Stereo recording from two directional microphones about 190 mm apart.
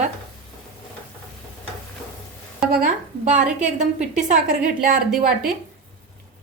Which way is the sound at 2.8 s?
40° right (ahead or behind).